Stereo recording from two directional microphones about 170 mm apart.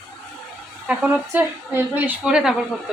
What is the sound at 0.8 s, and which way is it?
Speech, 10° right (ahead or behind).